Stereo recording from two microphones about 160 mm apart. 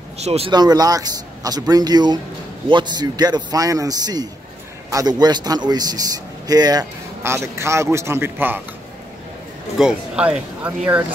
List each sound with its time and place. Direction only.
0.2 s speech: 40° right (ahead or behind)
0.5 s speech: 25° right (ahead or behind)
9.8 s speech: 5° right (ahead or behind)